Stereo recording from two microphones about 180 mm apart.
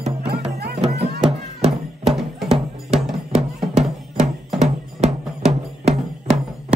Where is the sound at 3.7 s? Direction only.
35° right (ahead or behind).